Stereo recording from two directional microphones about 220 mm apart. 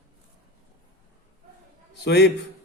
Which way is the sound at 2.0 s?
50° left (ahead or behind).